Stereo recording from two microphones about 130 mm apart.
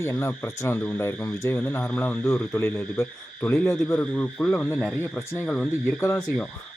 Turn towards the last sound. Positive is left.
turn(degrees=5)  # may be behind; listen again after turning